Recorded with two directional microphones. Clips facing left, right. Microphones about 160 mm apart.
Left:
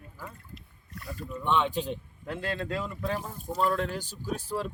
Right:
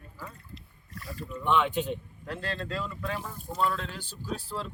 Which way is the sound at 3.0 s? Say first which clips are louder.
Left 3 dB; 40° left (ahead or behind).